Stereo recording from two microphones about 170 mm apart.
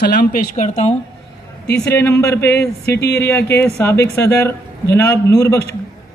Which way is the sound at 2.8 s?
75° left (ahead or behind).